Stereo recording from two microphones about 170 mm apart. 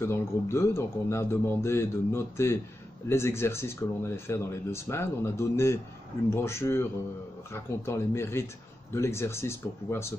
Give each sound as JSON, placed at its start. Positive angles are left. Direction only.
{"t": 0.0, "sound": "speech", "side_deg": 15}